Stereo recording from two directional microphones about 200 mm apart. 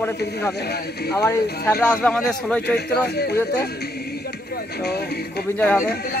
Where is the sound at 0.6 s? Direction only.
55° left (ahead or behind).